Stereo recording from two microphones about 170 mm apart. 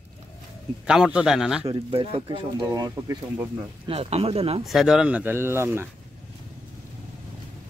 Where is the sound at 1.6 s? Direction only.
35° right (ahead or behind); by 3.5 s 20° right (ahead or behind).